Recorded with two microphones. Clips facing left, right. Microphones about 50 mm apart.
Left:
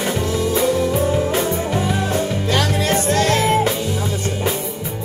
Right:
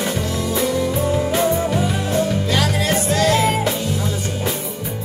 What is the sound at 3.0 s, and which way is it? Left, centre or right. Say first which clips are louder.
Music: right 1 dB; left.